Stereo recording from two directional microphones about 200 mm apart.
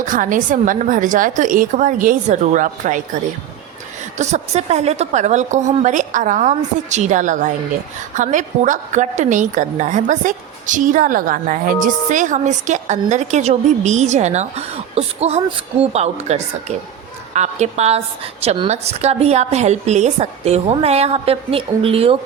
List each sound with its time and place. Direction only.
0.0 s a woman's voice: 40° right (ahead or behind)
4.2 s a woman's voice: 35° right (ahead or behind)